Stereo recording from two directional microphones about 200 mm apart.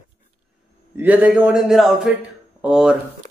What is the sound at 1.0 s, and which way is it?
A man's voice, 10° right (ahead or behind).